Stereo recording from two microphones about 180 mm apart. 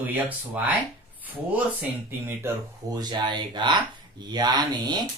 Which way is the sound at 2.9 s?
20° right (ahead or behind).